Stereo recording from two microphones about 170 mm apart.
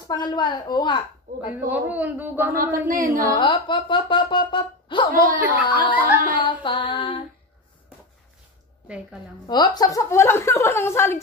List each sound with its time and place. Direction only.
0.1 s speech: 25° left (ahead or behind)
1.3 s carnatic music: 50° right (ahead or behind)
1.7 s a man's voice: 10° right (ahead or behind)
2.5 s speech: 55° right (ahead or behind)
2.9 s carnatic music: 55° right (ahead or behind)
3.3 s speech: 30° left (ahead or behind)
5.4 s a man's voice: 10° right (ahead or behind)
6.4 s a sound: 30° left (ahead or behind)
8.8 s a woman's voice: 5° right (ahead or behind)
9.5 s a woman's voice: 25° left (ahead or behind)